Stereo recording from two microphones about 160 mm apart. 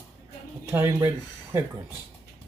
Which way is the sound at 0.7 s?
15° right (ahead or behind).